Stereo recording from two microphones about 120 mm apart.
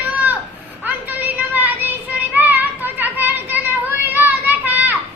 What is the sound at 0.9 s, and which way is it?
Child singing, 15° right (ahead or behind).